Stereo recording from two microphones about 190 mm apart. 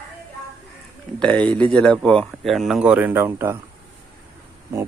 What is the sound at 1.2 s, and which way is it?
Speech, 10° left (ahead or behind).